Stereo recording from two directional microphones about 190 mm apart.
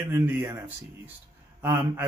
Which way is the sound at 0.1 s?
10° right (ahead or behind).